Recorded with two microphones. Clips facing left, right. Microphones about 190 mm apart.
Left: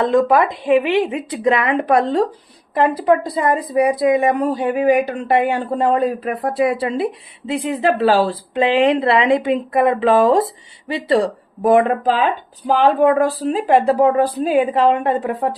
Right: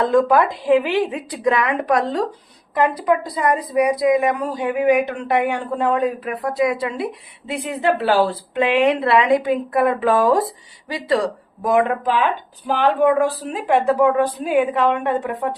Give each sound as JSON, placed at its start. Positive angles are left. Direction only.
{"t": 0.0, "sound": "a woman's voice", "side_deg": 20}